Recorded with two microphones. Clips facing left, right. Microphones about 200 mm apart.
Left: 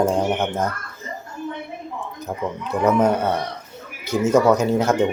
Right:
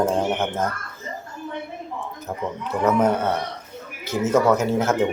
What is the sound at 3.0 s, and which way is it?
Speech, 10° left (ahead or behind).